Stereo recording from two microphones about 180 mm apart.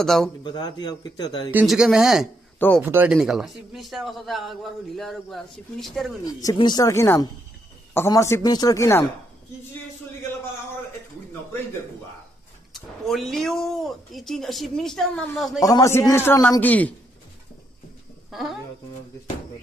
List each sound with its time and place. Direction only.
0.0 s a man's voice: centre (ahead or behind)
0.4 s speech: 25° left (ahead or behind)
1.5 s a man's voice: 5° right (ahead or behind)
6.2 s a man's voice: 20° left (ahead or behind)
12.7 s a man's voice: centre (ahead or behind)
15.6 s a man's voice: 20° left (ahead or behind)
18.3 s speech: centre (ahead or behind)